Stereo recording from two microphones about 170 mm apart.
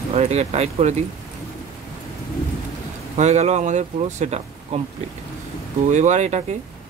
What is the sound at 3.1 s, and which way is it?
Speech, 40° right (ahead or behind).